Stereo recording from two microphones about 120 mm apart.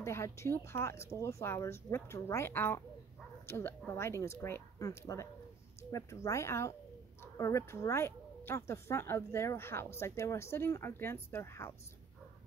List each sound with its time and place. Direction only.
0.0 s speech: 25° left (ahead or behind)